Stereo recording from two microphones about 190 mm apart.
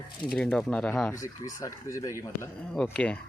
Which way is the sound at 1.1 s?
15° left (ahead or behind).